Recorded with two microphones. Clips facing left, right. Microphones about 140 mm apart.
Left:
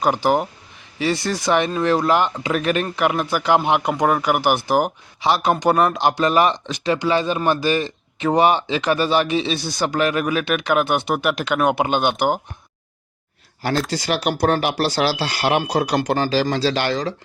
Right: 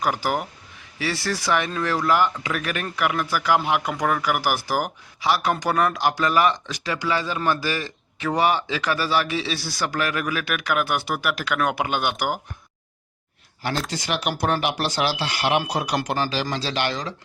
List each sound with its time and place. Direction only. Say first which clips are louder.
0.0 s speech: left 6 dB; 25° left (ahead or behind)
13.9 s speech: left 5 dB; 35° left (ahead or behind)